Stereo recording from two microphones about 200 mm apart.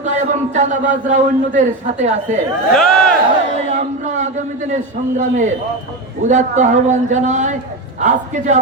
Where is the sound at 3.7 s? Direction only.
35° right (ahead or behind).